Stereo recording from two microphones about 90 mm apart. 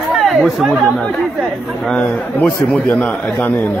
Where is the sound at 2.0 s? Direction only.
20° left (ahead or behind).